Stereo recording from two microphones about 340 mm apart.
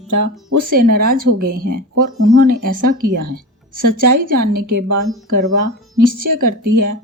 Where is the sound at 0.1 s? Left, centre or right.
Right.